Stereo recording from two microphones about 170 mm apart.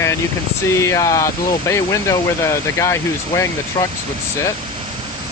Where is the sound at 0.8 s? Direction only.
20° left (ahead or behind).